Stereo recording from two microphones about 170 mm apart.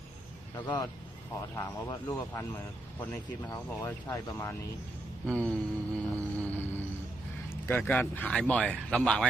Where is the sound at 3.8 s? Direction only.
15° left (ahead or behind).